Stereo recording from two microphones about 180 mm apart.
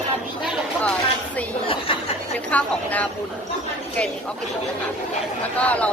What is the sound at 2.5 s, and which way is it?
Speech, 10° left (ahead or behind).